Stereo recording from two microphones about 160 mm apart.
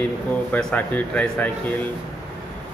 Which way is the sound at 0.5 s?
5° left (ahead or behind).